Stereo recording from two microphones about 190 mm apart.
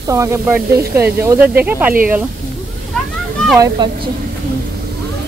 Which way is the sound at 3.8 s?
25° right (ahead or behind).